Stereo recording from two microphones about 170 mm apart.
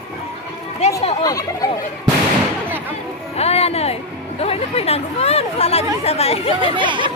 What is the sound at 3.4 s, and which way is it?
Music, 35° left (ahead or behind).